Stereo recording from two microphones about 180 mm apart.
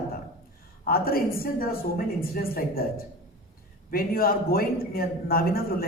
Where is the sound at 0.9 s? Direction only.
55° left (ahead or behind).